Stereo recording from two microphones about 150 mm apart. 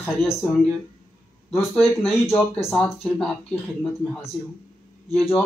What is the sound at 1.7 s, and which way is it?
Speech, centre (ahead or behind).